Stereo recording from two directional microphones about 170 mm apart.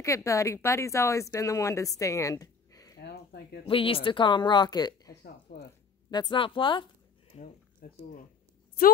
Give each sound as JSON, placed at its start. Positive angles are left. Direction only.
{"t": 0.0, "sound": "speech", "side_deg": 20}
{"t": 3.0, "sound": "a sound", "side_deg": 75}
{"t": 3.6, "sound": "speech", "side_deg": 30}
{"t": 7.3, "sound": "speech", "side_deg": 40}
{"t": 7.8, "sound": "speech", "side_deg": 65}